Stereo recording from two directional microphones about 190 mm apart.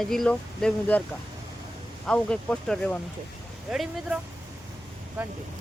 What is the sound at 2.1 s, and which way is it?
Speech, 5° left (ahead or behind).